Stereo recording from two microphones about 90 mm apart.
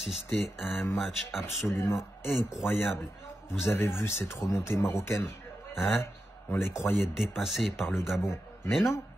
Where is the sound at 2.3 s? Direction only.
Centre (ahead or behind).